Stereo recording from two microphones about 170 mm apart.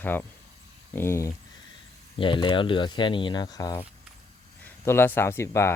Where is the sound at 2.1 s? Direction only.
30° left (ahead or behind).